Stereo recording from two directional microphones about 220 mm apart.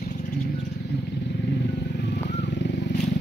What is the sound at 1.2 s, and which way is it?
Vehicle, 50° left (ahead or behind).